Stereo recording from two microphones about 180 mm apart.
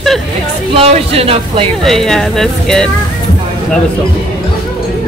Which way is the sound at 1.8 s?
Centre (ahead or behind).